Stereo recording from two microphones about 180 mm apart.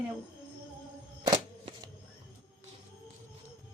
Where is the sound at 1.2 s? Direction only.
20° right (ahead or behind).